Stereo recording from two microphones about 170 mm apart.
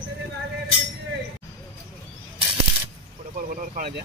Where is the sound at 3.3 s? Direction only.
55° right (ahead or behind).